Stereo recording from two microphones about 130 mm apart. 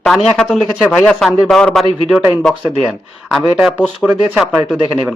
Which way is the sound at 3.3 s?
Centre (ahead or behind).